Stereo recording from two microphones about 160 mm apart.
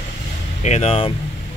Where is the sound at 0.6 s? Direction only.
45° left (ahead or behind).